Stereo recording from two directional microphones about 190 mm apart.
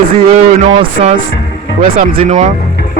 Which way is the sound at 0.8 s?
25° right (ahead or behind).